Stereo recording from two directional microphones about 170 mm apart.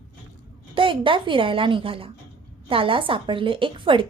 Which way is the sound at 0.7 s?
30° right (ahead or behind).